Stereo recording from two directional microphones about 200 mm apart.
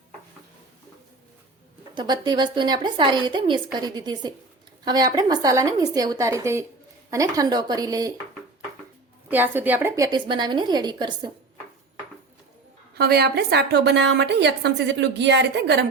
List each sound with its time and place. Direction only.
2.0 s a woman's voice: 20° right (ahead or behind)
9.3 s speech: 10° right (ahead or behind)
12.9 s a woman's voice: 50° right (ahead or behind)